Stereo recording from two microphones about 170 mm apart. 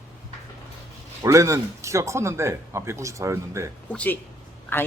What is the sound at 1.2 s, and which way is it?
Speech, 20° right (ahead or behind).